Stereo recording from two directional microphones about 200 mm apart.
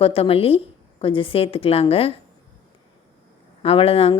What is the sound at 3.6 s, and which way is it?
Speech, 30° left (ahead or behind).